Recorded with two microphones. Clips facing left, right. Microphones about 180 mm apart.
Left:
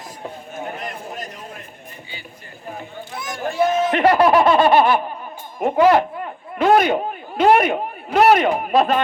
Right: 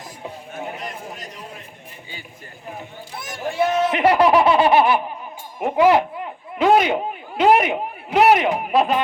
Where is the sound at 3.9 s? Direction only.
10° right (ahead or behind).